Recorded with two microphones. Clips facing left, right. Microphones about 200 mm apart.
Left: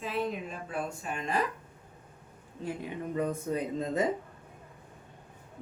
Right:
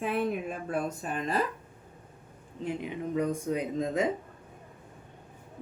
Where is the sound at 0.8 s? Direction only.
35° right (ahead or behind).